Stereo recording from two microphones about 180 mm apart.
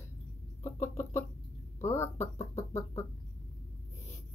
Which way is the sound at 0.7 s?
15° left (ahead or behind).